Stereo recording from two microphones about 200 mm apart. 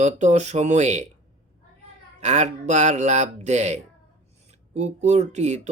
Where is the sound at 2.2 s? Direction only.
35° right (ahead or behind).